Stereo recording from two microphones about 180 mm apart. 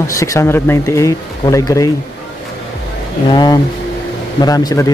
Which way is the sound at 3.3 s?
25° left (ahead or behind).